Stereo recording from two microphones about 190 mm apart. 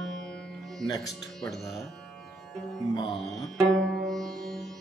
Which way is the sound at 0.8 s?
20° left (ahead or behind).